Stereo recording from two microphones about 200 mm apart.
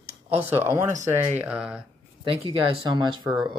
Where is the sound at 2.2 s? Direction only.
25° right (ahead or behind).